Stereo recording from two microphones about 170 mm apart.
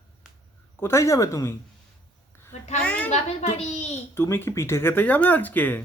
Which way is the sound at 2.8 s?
5° left (ahead or behind).